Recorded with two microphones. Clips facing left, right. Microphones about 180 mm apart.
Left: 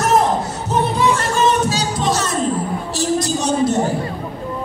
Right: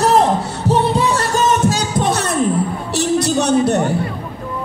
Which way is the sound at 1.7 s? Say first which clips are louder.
Right 2 dB; 60° right (ahead or behind).